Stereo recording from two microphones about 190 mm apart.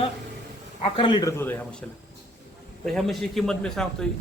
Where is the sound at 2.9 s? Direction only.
Centre (ahead or behind).